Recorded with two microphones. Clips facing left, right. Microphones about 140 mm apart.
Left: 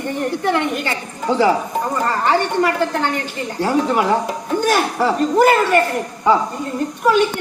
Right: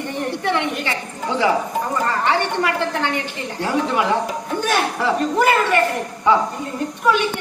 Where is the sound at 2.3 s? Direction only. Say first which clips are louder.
Left 5 dB; 40° left (ahead or behind).